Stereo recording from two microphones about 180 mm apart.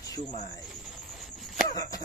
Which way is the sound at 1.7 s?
20° left (ahead or behind).